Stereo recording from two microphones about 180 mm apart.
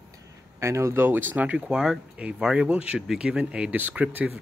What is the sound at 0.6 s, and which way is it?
Speech, 15° right (ahead or behind).